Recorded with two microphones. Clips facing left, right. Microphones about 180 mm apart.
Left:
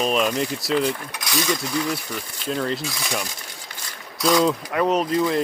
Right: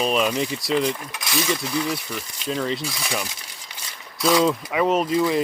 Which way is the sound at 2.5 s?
Centre (ahead or behind).